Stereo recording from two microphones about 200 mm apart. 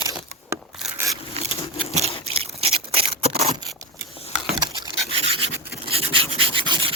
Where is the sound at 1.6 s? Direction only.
30° left (ahead or behind).